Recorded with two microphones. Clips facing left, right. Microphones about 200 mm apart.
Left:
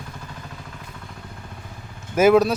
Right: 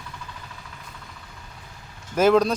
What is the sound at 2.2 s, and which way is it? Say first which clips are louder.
Speech: left 3 dB; 10° left (ahead or behind).